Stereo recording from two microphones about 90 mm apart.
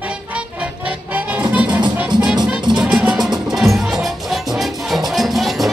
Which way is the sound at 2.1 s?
55° right (ahead or behind).